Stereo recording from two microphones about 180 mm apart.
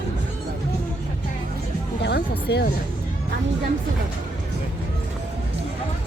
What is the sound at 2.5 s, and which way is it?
Speech, 70° left (ahead or behind).